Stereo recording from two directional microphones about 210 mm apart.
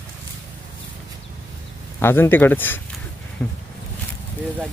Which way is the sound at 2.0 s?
10° left (ahead or behind).